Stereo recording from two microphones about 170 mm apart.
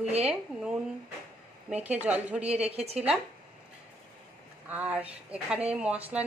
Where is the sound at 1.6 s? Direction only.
10° right (ahead or behind).